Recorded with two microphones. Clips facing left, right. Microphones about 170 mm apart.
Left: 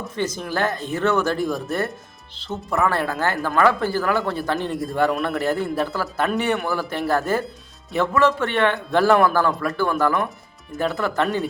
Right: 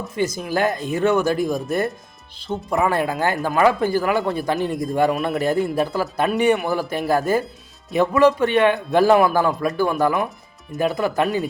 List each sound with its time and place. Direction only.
0.2 s speech: 10° right (ahead or behind)